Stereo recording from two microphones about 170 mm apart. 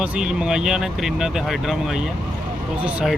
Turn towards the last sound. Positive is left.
turn(degrees=0)  # may be behind; listen again after turning